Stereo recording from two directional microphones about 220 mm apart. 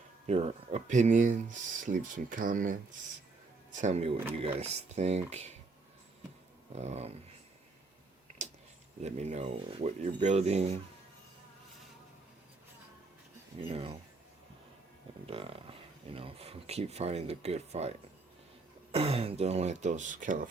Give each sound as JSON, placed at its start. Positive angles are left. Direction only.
{"t": 0.3, "sound": "speech", "side_deg": -30}
{"t": 6.7, "sound": "speech", "side_deg": -30}
{"t": 8.4, "sound": "a sound", "side_deg": -30}
{"t": 9.0, "sound": "speech", "side_deg": -30}
{"t": 13.7, "sound": "speech", "side_deg": -25}
{"t": 15.3, "sound": "speech", "side_deg": -25}